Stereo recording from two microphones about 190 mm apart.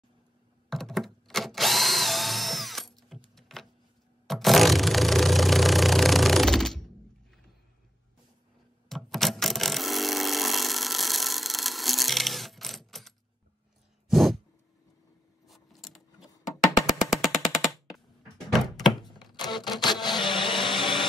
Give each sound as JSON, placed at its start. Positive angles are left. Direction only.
{"t": 0.7, "sound": "drill", "side_deg": 0}
{"t": 4.3, "sound": "engine", "side_deg": 0}
{"t": 8.8, "sound": "a sound", "side_deg": 0}
{"t": 14.1, "sound": "a sound", "side_deg": 0}
{"t": 15.4, "sound": "a sound", "side_deg": 0}
{"t": 16.7, "sound": "music", "side_deg": 0}
{"t": 18.9, "sound": "thunk", "side_deg": 25}
{"t": 19.3, "sound": "camera", "side_deg": 20}
{"t": 19.8, "sound": "printer", "side_deg": 20}